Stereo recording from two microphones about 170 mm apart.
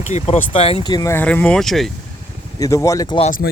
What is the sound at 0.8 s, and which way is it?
Speech, 20° left (ahead or behind).